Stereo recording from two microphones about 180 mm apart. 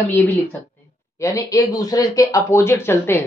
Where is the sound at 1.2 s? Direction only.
20° left (ahead or behind).